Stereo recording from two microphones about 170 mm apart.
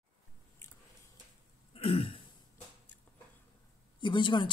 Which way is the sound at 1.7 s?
35° left (ahead or behind).